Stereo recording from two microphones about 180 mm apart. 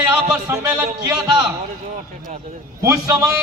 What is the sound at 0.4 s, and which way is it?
Speech, 10° right (ahead or behind).